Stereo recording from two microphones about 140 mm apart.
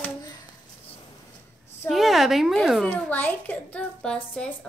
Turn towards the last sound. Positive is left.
turn(degrees=5)  # may be behind; listen again after turning